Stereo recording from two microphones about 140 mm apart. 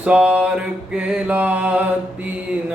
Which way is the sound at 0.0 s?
10° right (ahead or behind).